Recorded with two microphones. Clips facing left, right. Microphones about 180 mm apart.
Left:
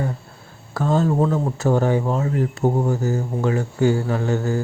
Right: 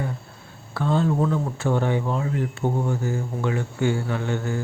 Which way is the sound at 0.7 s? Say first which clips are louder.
Left 3 dB; 40° left (ahead or behind).